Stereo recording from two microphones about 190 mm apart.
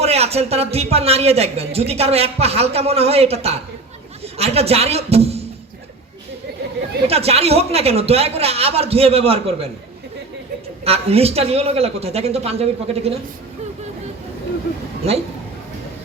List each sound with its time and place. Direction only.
0.0 s a man's voice: 35° right (ahead or behind)
7.1 s a man's voice: 30° right (ahead or behind)
10.8 s a man's voice: 30° right (ahead or behind)
15.1 s a man's voice: 35° right (ahead or behind)